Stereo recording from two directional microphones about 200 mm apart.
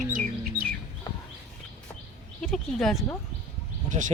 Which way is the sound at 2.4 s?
Centre (ahead or behind).